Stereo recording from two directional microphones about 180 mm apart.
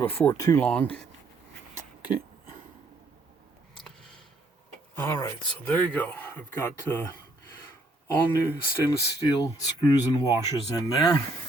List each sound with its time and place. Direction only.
0.0 s speech: 10° left (ahead or behind)
4.9 s speech: 15° left (ahead or behind)